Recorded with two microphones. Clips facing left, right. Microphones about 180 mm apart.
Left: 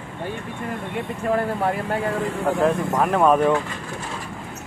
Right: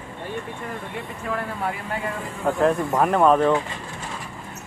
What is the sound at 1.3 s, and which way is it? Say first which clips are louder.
Speech: left 6 dB; 45° left (ahead or behind).